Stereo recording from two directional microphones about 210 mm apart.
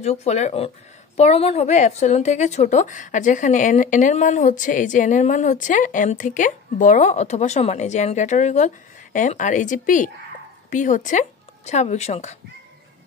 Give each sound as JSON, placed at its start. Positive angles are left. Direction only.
{"t": 0.0, "sound": "a woman's voice", "side_deg": 30}